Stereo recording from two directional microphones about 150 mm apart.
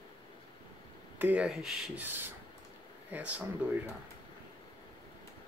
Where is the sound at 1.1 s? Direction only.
10° right (ahead or behind).